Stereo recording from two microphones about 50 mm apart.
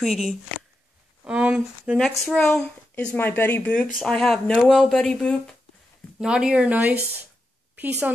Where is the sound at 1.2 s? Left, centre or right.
Right.